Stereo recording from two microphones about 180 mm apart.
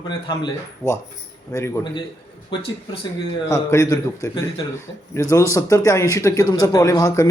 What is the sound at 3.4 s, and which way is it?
A man's voice, 15° left (ahead or behind).